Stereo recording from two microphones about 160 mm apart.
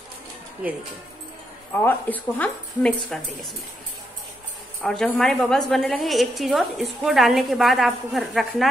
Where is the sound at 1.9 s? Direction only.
10° left (ahead or behind).